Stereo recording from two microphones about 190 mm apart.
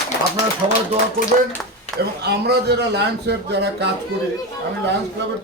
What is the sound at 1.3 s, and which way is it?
Speech, 25° left (ahead or behind).